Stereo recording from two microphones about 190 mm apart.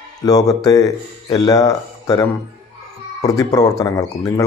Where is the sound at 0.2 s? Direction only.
20° left (ahead or behind).